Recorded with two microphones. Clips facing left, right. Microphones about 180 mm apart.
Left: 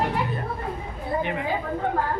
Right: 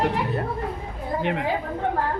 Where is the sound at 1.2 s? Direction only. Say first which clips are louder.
Right 3 dB; 65° right (ahead or behind).